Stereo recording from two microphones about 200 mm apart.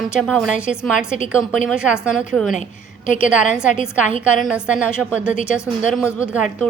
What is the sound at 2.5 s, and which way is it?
Speech, 40° left (ahead or behind).